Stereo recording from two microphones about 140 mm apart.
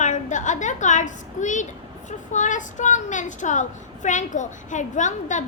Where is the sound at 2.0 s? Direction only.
60° left (ahead or behind).